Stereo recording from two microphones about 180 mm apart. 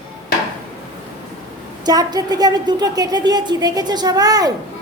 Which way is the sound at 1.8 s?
20° right (ahead or behind).